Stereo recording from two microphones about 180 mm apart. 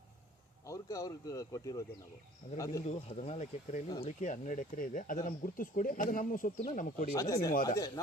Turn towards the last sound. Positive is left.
turn(degrees=20)  # may be behind; listen again after turning